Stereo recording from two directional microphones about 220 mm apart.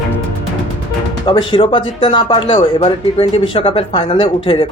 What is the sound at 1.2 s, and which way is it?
Speech, 20° left (ahead or behind).